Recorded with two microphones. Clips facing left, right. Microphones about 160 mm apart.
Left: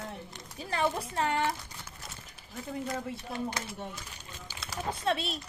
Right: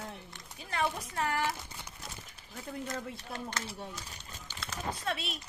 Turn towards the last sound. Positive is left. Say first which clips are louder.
# left 6 dB
turn(degrees=30)  # may be behind; listen again after turning